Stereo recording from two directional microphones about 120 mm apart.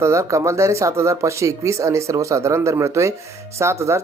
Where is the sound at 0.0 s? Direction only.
25° right (ahead or behind).